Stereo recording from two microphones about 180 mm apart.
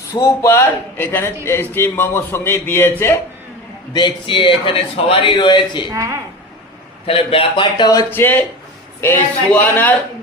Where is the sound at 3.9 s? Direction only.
25° left (ahead or behind).